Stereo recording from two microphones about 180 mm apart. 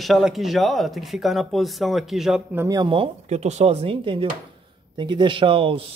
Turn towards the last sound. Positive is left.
turn(degrees=-30)  # may be behind; listen again after turning